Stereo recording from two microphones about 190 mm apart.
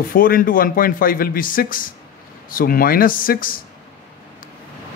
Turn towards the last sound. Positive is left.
turn(degrees=50)  # may be behind; listen again after turning